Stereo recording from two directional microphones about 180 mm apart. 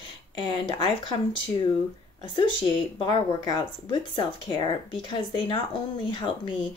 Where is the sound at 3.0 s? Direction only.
20° left (ahead or behind).